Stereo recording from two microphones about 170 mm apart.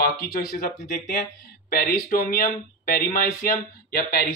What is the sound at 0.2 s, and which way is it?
Speech, 65° left (ahead or behind).